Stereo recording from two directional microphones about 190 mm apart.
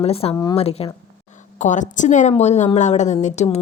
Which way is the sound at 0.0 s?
30° left (ahead or behind).